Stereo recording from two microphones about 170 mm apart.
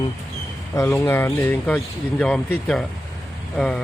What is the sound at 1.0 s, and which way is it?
Speech, 15° left (ahead or behind).